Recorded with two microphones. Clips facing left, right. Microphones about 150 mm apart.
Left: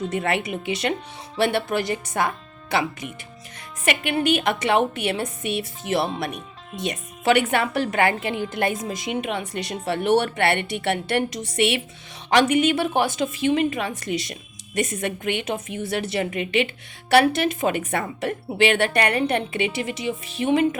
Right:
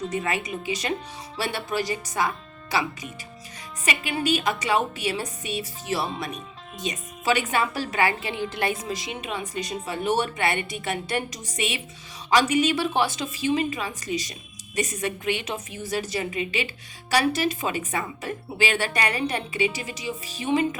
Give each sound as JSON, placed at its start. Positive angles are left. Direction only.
{"t": 0.1, "sound": "a woman's voice", "side_deg": 65}